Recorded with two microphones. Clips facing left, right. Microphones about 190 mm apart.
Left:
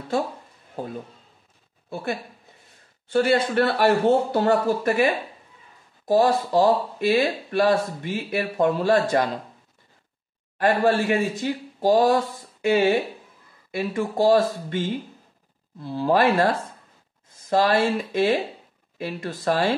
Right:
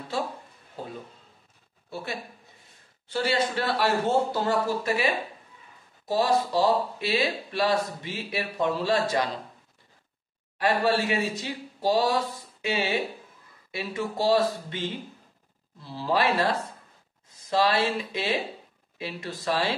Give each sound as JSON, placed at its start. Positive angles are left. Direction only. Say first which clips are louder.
{"t": 0.8, "sound": "speech", "louder": "left 6 dB", "side_deg": 50}
{"t": 3.1, "sound": "speech", "louder": "left 6 dB", "side_deg": 55}
{"t": 10.6, "sound": "speech", "louder": "left 4 dB", "side_deg": 50}